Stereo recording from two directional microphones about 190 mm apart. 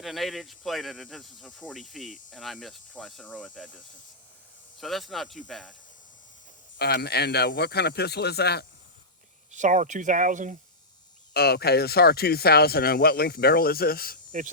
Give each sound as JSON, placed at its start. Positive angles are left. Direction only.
{"t": 0.0, "sound": "speech", "side_deg": 0}
{"t": 4.8, "sound": "speech", "side_deg": 0}
{"t": 6.7, "sound": "speech", "side_deg": 55}
{"t": 9.5, "sound": "speech", "side_deg": -40}
{"t": 11.3, "sound": "speech", "side_deg": 55}